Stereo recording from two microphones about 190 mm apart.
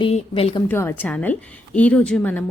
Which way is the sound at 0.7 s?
10° left (ahead or behind).